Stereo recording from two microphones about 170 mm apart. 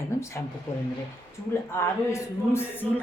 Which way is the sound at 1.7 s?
15° left (ahead or behind).